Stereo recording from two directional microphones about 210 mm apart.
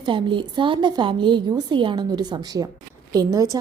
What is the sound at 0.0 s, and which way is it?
A woman's voice, 25° right (ahead or behind).